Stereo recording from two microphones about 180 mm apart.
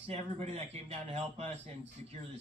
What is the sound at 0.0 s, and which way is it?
Speech, 35° right (ahead or behind).